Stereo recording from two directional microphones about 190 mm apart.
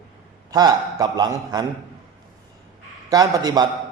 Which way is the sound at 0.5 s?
20° right (ahead or behind).